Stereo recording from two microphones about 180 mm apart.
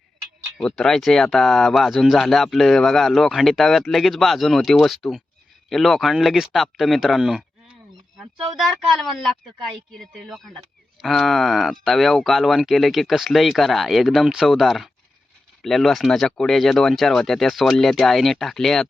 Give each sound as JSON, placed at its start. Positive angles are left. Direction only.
{"t": 0.6, "sound": "speech", "side_deg": 5}